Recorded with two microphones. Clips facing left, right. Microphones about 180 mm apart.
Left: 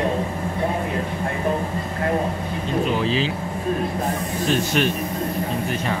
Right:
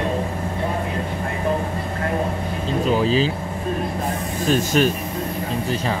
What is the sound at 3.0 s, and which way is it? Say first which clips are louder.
Speech: right 3 dB; 40° right (ahead or behind).